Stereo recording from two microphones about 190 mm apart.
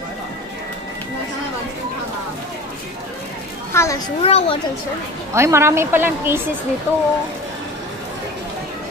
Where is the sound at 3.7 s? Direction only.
15° left (ahead or behind).